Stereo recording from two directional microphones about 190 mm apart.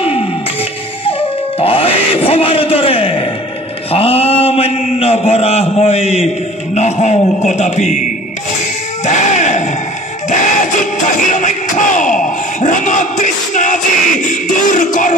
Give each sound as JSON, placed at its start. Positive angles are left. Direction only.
{"t": 0.0, "sound": "music", "side_deg": 30}
{"t": 1.6, "sound": "a sound", "side_deg": 30}
{"t": 3.9, "sound": "a man's voice", "side_deg": 30}
{"t": 9.0, "sound": "music", "side_deg": 40}